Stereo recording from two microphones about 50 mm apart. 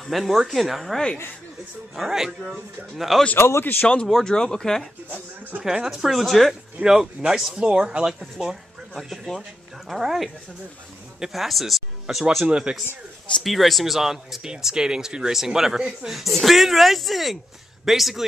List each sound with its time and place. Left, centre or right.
0.0 s speech: centre
2.0 s speech: centre
3.3 s speech: left
3.8 s speech: left
4.1 s speech: centre
5.1 s speech: right
5.9 s speech: centre
6.8 s speech: centre
12.4 s speech: centre
13.4 s speech: centre